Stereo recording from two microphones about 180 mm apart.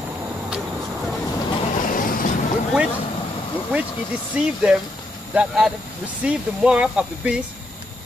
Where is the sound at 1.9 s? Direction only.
50° left (ahead or behind).